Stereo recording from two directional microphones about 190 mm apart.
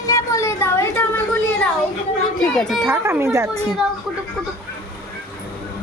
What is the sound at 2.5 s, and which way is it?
Speech, centre (ahead or behind).